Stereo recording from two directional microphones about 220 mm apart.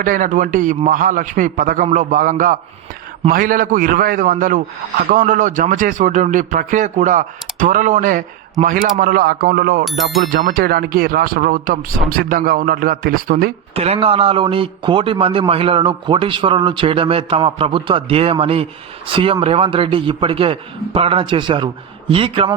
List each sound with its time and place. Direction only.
0.0 s speech: 40° right (ahead or behind)
9.8 s music: centre (ahead or behind)
10.2 s speech: 40° right (ahead or behind)
13.7 s a man's voice: 25° right (ahead or behind)